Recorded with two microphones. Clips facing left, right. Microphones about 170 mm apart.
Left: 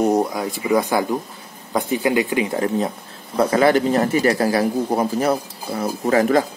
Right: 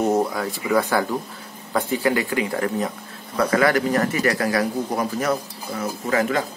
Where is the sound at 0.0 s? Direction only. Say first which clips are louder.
Left 2 dB; 15° left (ahead or behind); by 6.4 s 35° left (ahead or behind).